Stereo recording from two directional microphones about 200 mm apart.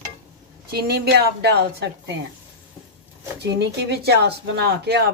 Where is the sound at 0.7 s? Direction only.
50° right (ahead or behind).